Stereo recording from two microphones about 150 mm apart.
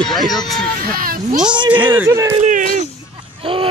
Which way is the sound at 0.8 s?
75° right (ahead or behind).